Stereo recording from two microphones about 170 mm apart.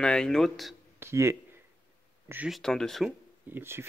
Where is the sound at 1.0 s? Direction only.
15° right (ahead or behind).